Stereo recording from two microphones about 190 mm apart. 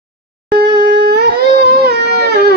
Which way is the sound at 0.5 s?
55° right (ahead or behind).